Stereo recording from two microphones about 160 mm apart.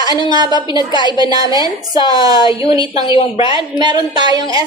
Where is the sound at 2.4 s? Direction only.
35° left (ahead or behind).